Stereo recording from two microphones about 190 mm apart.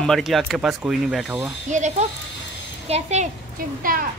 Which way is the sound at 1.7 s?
40° right (ahead or behind).